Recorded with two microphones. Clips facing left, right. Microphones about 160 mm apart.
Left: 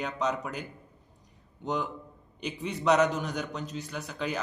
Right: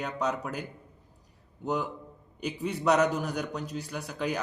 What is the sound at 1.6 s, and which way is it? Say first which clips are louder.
A man's voice: right 1 dB; 5° right (ahead or behind).